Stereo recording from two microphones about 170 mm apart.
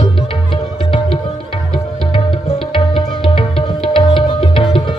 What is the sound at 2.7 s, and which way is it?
Music, 30° left (ahead or behind).